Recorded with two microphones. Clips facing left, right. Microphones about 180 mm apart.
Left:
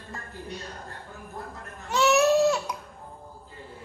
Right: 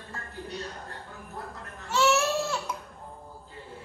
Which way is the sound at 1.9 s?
15° left (ahead or behind).